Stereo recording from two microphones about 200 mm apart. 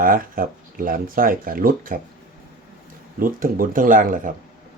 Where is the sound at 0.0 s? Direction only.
45° right (ahead or behind).